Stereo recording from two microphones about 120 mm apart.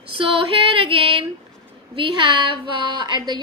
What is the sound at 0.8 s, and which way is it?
A woman's voice, 45° right (ahead or behind).